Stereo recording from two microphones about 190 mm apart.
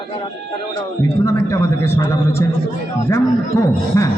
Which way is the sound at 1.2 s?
15° left (ahead or behind).